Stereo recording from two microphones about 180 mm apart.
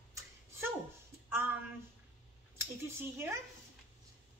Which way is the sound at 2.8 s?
15° right (ahead or behind).